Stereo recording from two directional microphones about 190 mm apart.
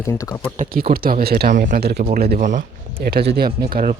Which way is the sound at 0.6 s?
50° right (ahead or behind).